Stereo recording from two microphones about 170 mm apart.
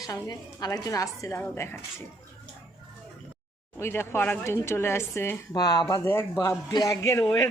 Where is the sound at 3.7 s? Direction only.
15° left (ahead or behind).